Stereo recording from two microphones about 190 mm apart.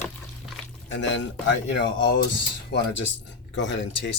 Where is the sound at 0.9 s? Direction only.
70° left (ahead or behind).